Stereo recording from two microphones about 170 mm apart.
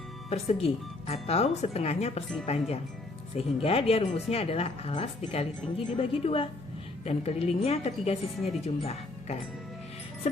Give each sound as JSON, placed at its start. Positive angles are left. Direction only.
{"t": 0.3, "sound": "speech", "side_deg": 40}
{"t": 3.3, "sound": "speech", "side_deg": 35}